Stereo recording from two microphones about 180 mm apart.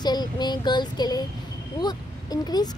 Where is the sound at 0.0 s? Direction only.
25° left (ahead or behind).